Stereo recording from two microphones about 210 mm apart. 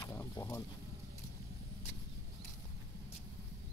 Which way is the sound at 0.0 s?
10° left (ahead or behind).